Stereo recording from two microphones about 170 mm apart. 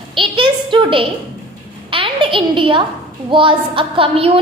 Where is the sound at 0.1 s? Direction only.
30° right (ahead or behind).